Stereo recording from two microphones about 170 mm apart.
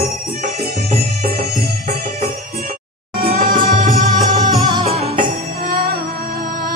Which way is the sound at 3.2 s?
55° right (ahead or behind).